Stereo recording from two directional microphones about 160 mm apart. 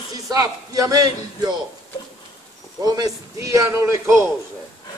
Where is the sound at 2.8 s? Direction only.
25° right (ahead or behind).